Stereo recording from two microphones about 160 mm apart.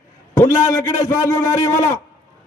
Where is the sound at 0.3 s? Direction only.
20° left (ahead or behind).